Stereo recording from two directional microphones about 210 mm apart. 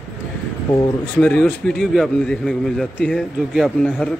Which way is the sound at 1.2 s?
5° left (ahead or behind).